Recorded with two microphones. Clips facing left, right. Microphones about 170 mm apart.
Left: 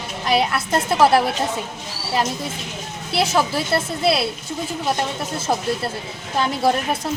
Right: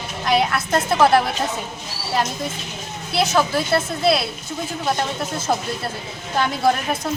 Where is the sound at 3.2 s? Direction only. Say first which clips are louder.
Right 1 dB; 30° left (ahead or behind).